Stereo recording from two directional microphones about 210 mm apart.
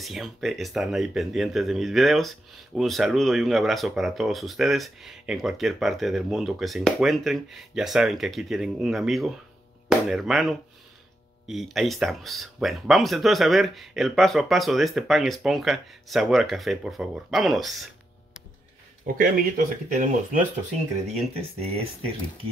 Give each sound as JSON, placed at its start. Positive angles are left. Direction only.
{"t": 0.0, "sound": "speech", "side_deg": 0}
{"t": 19.1, "sound": "speech", "side_deg": -40}
{"t": 21.5, "sound": "speech", "side_deg": -30}